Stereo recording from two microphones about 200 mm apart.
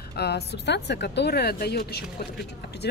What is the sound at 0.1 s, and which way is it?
A woman's voice, 55° left (ahead or behind).